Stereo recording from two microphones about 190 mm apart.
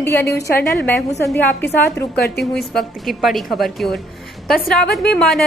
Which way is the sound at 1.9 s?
60° left (ahead or behind).